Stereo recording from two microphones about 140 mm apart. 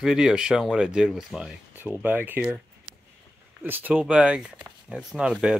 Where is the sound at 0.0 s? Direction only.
5° right (ahead or behind).